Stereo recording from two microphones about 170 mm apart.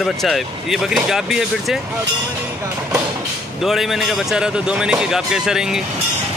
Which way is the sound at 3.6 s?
Centre (ahead or behind).